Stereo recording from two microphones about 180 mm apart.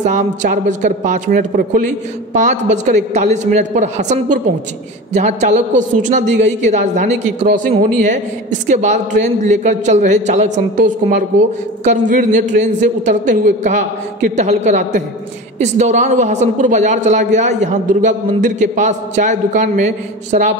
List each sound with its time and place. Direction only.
0.0 s a woman's voice: 40° right (ahead or behind)